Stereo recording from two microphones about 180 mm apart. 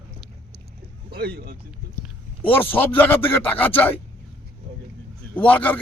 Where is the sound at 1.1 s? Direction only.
60° right (ahead or behind).